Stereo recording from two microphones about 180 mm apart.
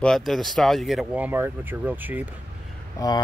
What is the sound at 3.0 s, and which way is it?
Speech, 20° left (ahead or behind).